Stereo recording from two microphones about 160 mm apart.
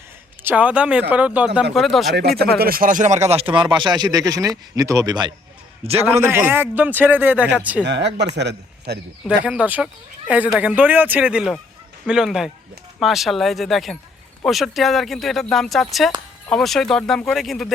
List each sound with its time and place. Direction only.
0.4 s speech: 10° right (ahead or behind)
2.4 s speech: 70° right (ahead or behind); by 5.3 s 25° right (ahead or behind)
5.8 s a man's voice: 40° right (ahead or behind)
6.2 s speech: 15° right (ahead or behind)
7.9 s a man's voice: 90° right
9.4 s speech: 10° right (ahead or behind)